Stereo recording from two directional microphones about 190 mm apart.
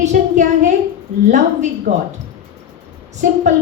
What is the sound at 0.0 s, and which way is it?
Speech, 40° right (ahead or behind).